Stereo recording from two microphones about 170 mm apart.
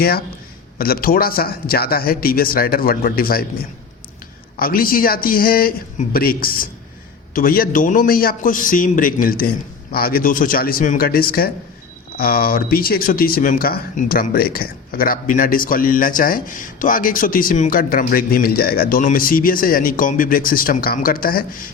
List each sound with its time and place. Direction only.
0.8 s speech: 60° left (ahead or behind)
4.5 s speech: 60° left (ahead or behind)